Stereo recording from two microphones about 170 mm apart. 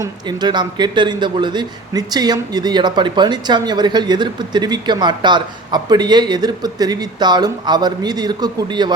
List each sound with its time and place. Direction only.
0.0 s a man's voice: 25° right (ahead or behind)